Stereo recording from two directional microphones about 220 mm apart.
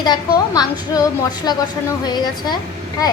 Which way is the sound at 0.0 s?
20° left (ahead or behind).